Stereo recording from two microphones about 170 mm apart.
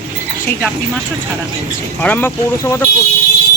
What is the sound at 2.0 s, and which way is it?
Speech, 10° left (ahead or behind).